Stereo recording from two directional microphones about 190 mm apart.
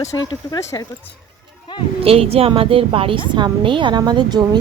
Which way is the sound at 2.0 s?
30° right (ahead or behind).